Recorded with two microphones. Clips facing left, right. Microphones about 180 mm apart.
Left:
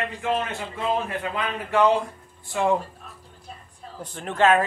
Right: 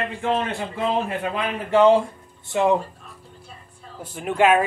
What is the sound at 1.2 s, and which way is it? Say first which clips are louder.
A man's voice: right 3 dB; 25° right (ahead or behind).